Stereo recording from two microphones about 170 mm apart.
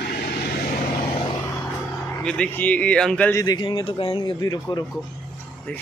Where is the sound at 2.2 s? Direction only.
5° left (ahead or behind).